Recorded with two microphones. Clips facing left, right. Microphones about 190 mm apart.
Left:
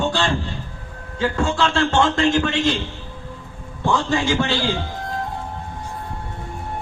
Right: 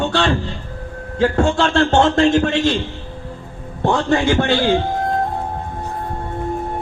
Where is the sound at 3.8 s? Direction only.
60° right (ahead or behind).